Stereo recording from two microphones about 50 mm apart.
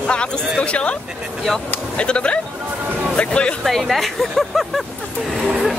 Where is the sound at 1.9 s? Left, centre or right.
Left.